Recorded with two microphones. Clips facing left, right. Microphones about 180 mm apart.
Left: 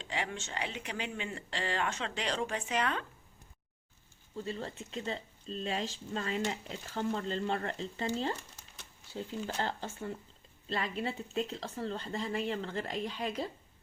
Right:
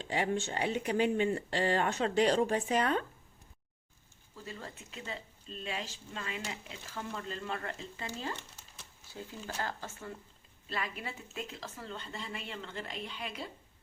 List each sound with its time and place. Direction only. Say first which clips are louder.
0.0 s speech: right 6 dB; 40° right (ahead or behind)
4.4 s speech: left 7 dB; 30° left (ahead or behind)